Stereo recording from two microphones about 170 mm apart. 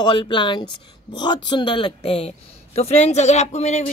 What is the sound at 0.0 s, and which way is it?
Speech, 30° left (ahead or behind).